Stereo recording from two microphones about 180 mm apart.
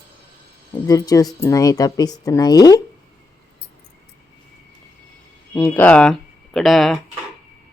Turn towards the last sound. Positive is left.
turn(degrees=0)  # may be behind; listen again after turning